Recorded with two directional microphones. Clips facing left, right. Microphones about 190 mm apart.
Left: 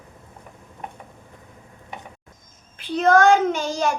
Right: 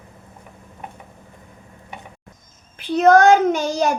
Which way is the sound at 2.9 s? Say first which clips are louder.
Right 3 dB; 40° right (ahead or behind).